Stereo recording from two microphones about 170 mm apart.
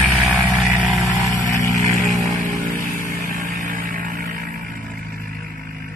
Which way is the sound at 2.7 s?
50° right (ahead or behind).